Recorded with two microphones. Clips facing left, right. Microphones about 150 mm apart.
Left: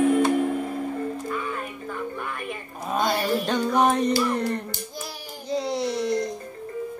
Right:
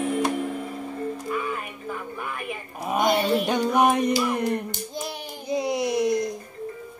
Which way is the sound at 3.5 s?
10° right (ahead or behind).